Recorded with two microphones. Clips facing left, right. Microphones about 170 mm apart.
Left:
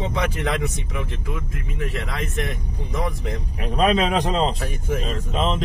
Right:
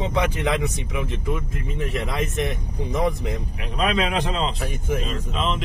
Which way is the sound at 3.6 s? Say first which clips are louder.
Left 4 dB; 40° left (ahead or behind).